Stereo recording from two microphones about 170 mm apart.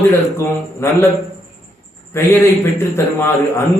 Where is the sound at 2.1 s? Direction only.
15° left (ahead or behind).